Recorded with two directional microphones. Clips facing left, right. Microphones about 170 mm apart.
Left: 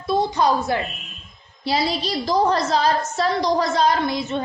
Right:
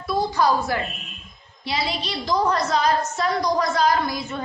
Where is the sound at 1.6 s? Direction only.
35° left (ahead or behind).